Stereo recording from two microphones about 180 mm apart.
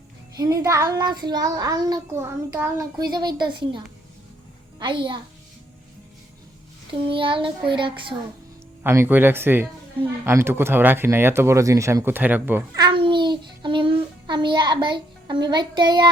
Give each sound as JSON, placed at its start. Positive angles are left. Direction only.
{"t": 0.3, "sound": "child singing", "side_deg": -20}
{"t": 3.1, "sound": "child singing", "side_deg": -25}
{"t": 4.8, "sound": "child singing", "side_deg": -25}
{"t": 7.1, "sound": "child singing", "side_deg": -30}
{"t": 8.8, "sound": "speech", "side_deg": -10}
{"t": 12.7, "sound": "child singing", "side_deg": -25}